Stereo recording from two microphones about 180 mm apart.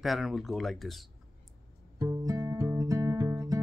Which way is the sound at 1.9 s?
15° right (ahead or behind).